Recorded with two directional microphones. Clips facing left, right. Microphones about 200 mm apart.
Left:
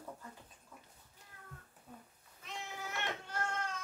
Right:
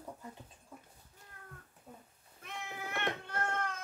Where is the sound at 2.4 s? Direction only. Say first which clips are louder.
Right 1 dB; 55° right (ahead or behind).